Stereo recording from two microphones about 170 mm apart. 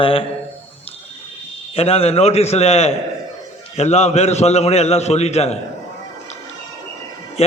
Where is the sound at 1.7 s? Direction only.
35° left (ahead or behind).